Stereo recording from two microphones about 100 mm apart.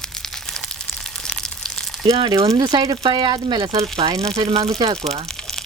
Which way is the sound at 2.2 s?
60° right (ahead or behind).